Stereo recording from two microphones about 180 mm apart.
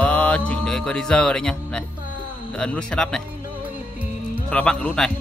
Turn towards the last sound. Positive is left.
turn(degrees=5)  # may be behind; listen again after turning